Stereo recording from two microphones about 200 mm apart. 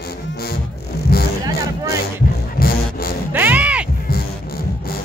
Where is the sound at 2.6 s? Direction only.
50° left (ahead or behind).